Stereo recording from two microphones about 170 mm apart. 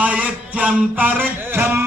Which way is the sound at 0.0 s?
10° right (ahead or behind).